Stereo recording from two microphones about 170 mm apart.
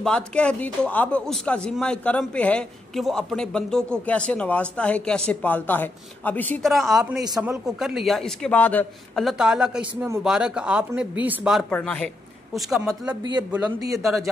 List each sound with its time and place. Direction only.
0.0 s speech: 5° left (ahead or behind)
7.3 s a man's voice: 5° right (ahead or behind)
9.2 s a man's voice: centre (ahead or behind)
11.7 s a man's voice: 10° left (ahead or behind)
13.1 s a man's voice: 25° right (ahead or behind)
14.0 s a man's voice: centre (ahead or behind)